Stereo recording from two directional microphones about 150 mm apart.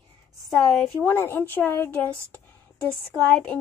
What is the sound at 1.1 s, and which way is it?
Speech, 15° left (ahead or behind).